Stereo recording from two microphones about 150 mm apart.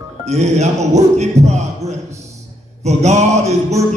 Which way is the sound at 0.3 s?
45° right (ahead or behind).